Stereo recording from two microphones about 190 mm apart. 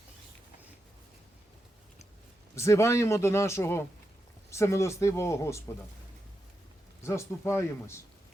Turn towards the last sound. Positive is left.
turn(degrees=15)  # may be behind; listen again after turning